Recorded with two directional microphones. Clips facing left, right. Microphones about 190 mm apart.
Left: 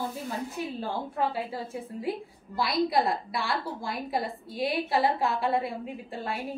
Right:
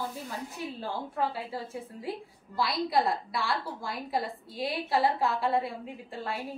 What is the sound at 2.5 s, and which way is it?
A woman's voice, 15° left (ahead or behind).